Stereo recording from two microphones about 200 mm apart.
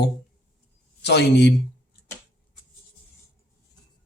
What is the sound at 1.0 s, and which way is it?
Speech, 55° left (ahead or behind).